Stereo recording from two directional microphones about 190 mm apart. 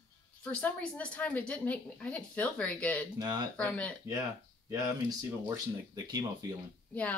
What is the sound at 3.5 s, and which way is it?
Speech, 5° left (ahead or behind).